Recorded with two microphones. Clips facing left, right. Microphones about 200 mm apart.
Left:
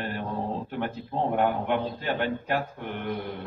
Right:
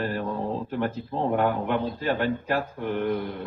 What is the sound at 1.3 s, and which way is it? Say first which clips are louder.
Speech: right 1 dB; 40° right (ahead or behind).